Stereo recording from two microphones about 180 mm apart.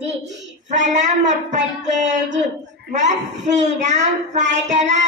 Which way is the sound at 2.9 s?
40° right (ahead or behind).